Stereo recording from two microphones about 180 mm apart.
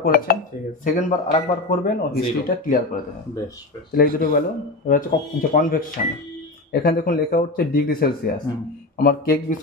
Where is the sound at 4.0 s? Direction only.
50° left (ahead or behind).